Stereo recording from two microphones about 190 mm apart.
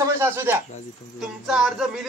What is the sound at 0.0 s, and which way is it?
Speech, 15° right (ahead or behind).